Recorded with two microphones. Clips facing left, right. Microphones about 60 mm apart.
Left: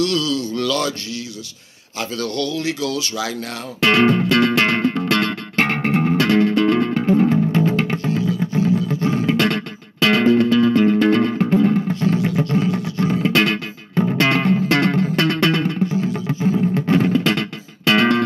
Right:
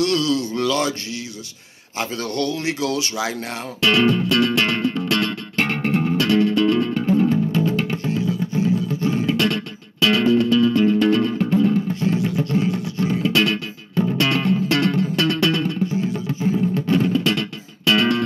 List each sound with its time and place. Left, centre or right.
0.0 s speech: right
2.0 s speech: right
3.8 s music: left